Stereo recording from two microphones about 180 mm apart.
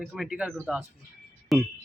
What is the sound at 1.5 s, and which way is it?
Speech, centre (ahead or behind).